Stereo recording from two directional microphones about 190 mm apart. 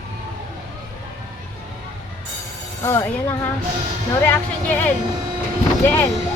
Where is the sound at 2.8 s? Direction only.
10° left (ahead or behind).